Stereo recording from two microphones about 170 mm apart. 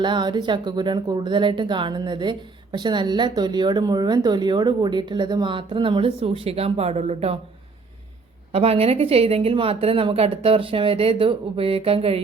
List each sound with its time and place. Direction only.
0.0 s speech: 25° right (ahead or behind)
8.5 s a woman's voice: 35° right (ahead or behind)